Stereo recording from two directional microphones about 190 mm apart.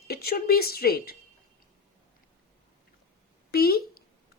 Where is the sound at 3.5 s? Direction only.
55° left (ahead or behind).